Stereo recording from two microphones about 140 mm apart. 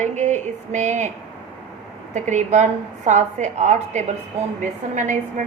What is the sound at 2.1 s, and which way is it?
A woman's voice, 60° right (ahead or behind).